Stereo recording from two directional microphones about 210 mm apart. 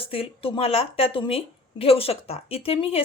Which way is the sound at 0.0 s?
25° left (ahead or behind).